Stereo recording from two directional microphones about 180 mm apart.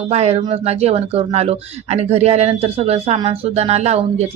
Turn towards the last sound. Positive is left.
turn(degrees=-35)  # may be behind; listen again after turning